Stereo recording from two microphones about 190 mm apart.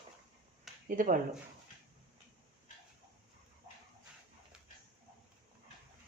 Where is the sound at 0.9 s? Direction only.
45° right (ahead or behind).